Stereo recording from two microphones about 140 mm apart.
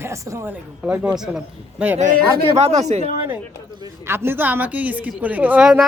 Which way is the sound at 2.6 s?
50° right (ahead or behind).